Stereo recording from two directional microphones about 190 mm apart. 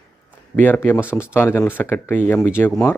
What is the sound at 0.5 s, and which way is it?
Speech, 10° left (ahead or behind).